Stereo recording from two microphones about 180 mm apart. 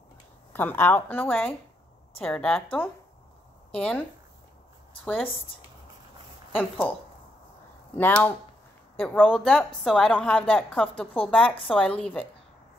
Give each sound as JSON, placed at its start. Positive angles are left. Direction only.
{"t": 0.5, "sound": "a woman's voice", "side_deg": 10}
{"t": 5.0, "sound": "a woman's voice", "side_deg": 10}
{"t": 7.9, "sound": "a woman's voice", "side_deg": 10}